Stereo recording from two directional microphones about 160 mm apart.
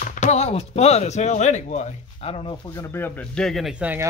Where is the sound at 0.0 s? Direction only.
50° left (ahead or behind).